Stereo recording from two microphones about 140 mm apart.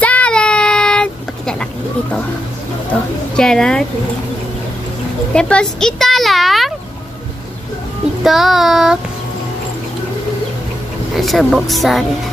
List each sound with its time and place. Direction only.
0.0 s child singing: 10° left (ahead or behind)
2.9 s a woman's voice: 5° left (ahead or behind)
5.3 s speech: 5° left (ahead or behind)
8.2 s speech: centre (ahead or behind)
11.1 s speech: centre (ahead or behind)